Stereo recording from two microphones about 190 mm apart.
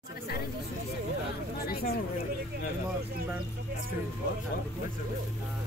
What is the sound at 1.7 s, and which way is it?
Speech, 50° left (ahead or behind).